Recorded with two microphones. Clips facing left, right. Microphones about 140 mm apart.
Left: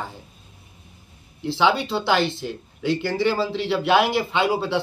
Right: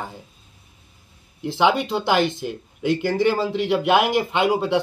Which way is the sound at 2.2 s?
50° right (ahead or behind).